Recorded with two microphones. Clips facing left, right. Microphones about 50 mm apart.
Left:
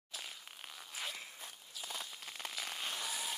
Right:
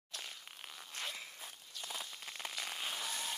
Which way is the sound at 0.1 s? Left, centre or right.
Centre.